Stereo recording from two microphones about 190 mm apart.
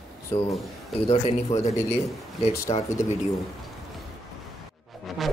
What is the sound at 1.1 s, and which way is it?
A man's voice, 35° left (ahead or behind).